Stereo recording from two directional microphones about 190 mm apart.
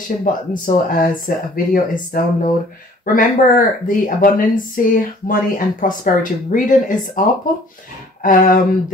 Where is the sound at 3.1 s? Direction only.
45° left (ahead or behind).